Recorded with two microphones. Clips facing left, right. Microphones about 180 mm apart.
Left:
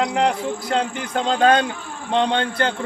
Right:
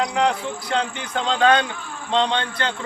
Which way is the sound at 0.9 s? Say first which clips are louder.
Left 2 dB; 45° left (ahead or behind).